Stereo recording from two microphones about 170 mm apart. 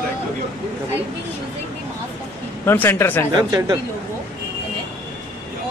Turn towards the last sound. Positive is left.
turn(degrees=-25)  # may be behind; listen again after turning